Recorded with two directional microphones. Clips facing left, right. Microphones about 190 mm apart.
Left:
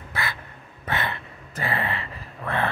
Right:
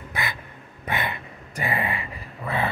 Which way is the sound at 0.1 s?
15° right (ahead or behind).